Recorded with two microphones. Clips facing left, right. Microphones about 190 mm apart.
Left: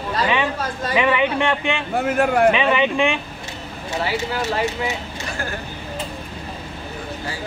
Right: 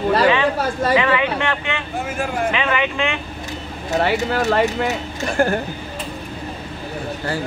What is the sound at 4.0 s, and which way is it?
Speech, 55° right (ahead or behind).